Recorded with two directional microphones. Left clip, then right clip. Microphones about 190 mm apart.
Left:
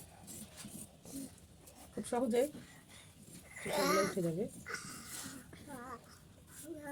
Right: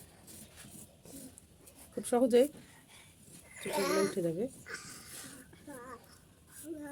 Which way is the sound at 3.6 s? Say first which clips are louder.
Right 1 dB; 10° right (ahead or behind).